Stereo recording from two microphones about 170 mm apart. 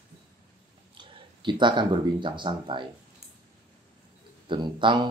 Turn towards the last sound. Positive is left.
turn(degrees=-25)  # may be behind; listen again after turning